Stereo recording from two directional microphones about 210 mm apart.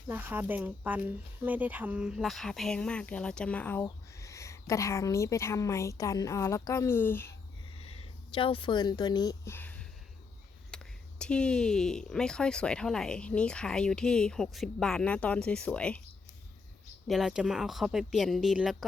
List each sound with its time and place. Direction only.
0.1 s a woman's voice: 10° right (ahead or behind); by 7.3 s 10° left (ahead or behind)
7.8 s a sound: 30° left (ahead or behind); by 10.9 s 5° left (ahead or behind)
11.2 s speech: 5° left (ahead or behind)
17.1 s speech: centre (ahead or behind)